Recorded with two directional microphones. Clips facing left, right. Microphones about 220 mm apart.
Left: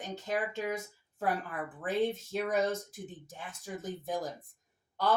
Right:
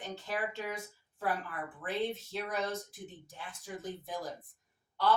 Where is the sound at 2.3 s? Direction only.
45° left (ahead or behind).